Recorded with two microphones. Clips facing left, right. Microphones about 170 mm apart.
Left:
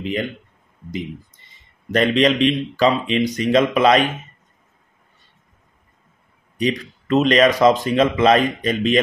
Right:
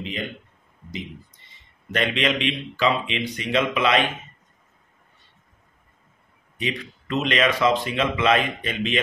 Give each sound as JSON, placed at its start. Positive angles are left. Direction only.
{"t": 1.9, "sound": "speech", "side_deg": 40}
{"t": 6.6, "sound": "speech", "side_deg": 40}